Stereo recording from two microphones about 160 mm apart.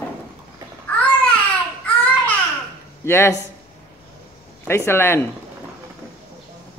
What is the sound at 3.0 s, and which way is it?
Speech, 15° left (ahead or behind).